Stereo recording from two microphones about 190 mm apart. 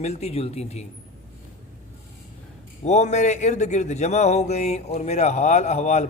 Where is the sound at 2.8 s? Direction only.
35° left (ahead or behind).